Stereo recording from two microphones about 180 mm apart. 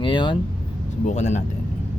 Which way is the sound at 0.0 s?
25° left (ahead or behind).